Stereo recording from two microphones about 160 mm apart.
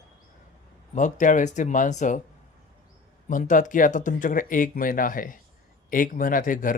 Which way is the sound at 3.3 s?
55° left (ahead or behind).